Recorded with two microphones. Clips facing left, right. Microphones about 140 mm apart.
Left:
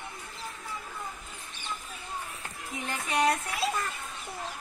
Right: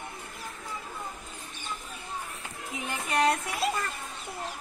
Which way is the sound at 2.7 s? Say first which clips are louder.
Right 1 dB; 5° right (ahead or behind).